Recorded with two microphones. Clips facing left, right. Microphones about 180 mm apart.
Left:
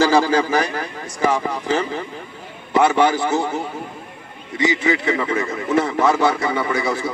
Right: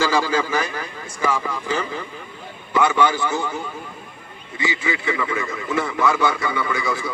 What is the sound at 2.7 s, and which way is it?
Speech, 35° left (ahead or behind).